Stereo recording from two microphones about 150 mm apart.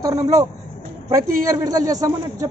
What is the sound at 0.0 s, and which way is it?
A man's voice, 25° right (ahead or behind).